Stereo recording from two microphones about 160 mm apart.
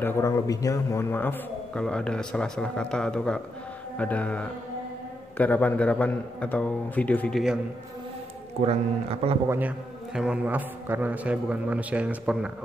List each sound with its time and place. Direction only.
0.0 s a man's voice: 15° left (ahead or behind)
8.5 s speech: 40° right (ahead or behind)
9.5 s a man's voice: 10° right (ahead or behind)